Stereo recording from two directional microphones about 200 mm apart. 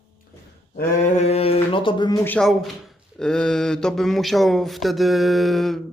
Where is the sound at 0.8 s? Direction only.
35° left (ahead or behind).